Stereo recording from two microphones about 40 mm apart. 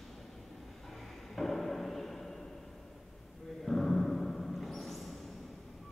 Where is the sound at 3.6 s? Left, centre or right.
Centre.